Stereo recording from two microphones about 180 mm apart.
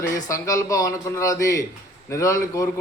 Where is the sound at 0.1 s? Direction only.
15° left (ahead or behind).